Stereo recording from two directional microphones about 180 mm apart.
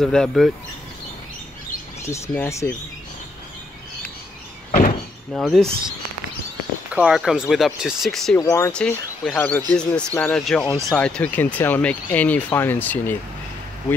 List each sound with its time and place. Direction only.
0.0 s speech: 5° left (ahead or behind)
2.0 s speech: 15° left (ahead or behind)
4.6 s door: 50° left (ahead or behind)
5.3 s speech: centre (ahead or behind)
8.4 s speech: 15° left (ahead or behind)
8.7 s speech: 5° left (ahead or behind)